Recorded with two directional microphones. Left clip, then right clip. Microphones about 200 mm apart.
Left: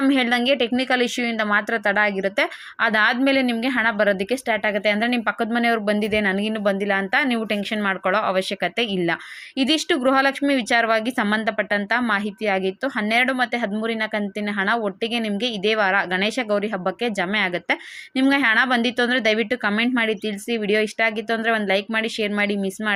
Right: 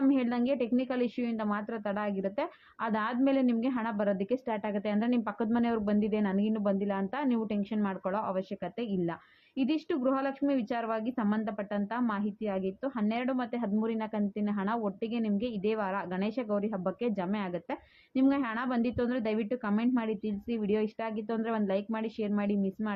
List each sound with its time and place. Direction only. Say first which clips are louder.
0.1 s a woman's voice: left 11 dB; 15° left (ahead or behind)
17.0 s a woman's voice: left 12 dB; 15° left (ahead or behind)